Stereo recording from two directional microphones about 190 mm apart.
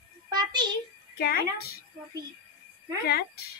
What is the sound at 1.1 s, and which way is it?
Speech, 55° left (ahead or behind).